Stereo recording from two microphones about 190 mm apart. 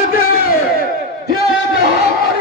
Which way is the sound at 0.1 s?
50° left (ahead or behind).